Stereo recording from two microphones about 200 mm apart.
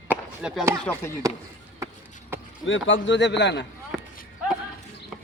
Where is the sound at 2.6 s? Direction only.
70° left (ahead or behind).